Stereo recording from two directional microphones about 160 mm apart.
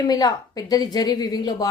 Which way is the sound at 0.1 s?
25° left (ahead or behind).